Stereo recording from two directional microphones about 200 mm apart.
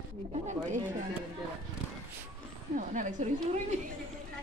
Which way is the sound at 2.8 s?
40° right (ahead or behind).